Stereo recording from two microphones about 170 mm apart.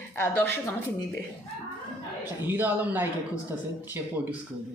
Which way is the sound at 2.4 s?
10° right (ahead or behind).